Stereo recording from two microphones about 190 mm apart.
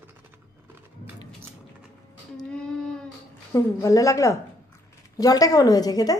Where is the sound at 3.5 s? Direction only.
15° left (ahead or behind).